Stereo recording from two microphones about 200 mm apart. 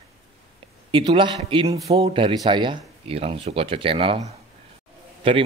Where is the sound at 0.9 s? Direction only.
25° right (ahead or behind).